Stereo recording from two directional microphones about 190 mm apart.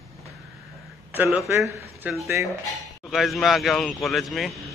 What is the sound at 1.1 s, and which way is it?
A man's voice, 10° right (ahead or behind).